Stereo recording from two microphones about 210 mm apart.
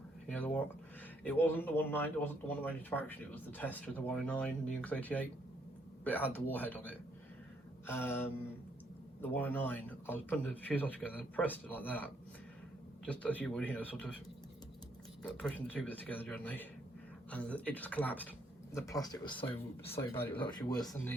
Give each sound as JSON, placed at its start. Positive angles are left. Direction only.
{"t": 0.3, "sound": "speech", "side_deg": 5}
{"t": 15.2, "sound": "speech", "side_deg": 5}